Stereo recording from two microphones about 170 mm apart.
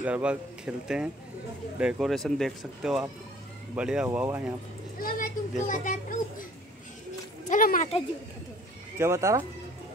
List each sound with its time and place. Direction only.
0.0 s speech: 5° right (ahead or behind)
4.9 s a child's voice: 55° left (ahead or behind)
7.4 s a child's voice: 55° left (ahead or behind)
8.9 s speech: 15° right (ahead or behind)